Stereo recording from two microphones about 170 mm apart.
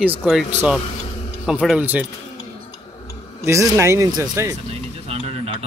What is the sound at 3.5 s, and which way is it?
Speech, 15° right (ahead or behind).